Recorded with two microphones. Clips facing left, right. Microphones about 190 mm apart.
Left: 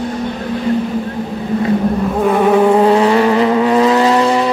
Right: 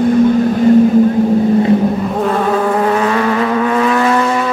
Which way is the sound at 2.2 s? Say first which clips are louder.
Left 5 dB; 10° left (ahead or behind).